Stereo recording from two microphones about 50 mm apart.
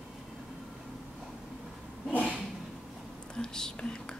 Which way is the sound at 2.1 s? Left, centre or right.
Left.